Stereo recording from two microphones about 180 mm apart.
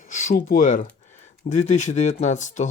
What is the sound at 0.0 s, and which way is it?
Speech, 50° left (ahead or behind).